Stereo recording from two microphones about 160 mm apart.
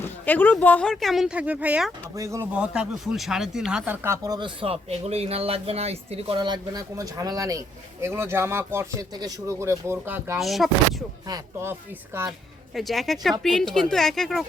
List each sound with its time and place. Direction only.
0.0 s speech: 10° left (ahead or behind); by 1.9 s 10° right (ahead or behind)
2.1 s speech: 20° right (ahead or behind)
2.5 s speech: 5° right (ahead or behind)
10.4 s speech: centre (ahead or behind)
11.3 s speech: 25° right (ahead or behind)
12.7 s speech: centre (ahead or behind)